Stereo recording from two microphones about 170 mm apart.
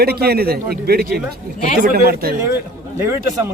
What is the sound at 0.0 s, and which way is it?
A man's voice, 65° right (ahead or behind).